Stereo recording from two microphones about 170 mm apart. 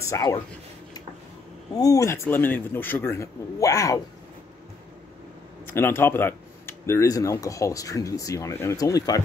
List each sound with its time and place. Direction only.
0.0 s speech: 20° left (ahead or behind)
1.8 s speech: 20° left (ahead or behind)
5.7 s speech: 15° left (ahead or behind)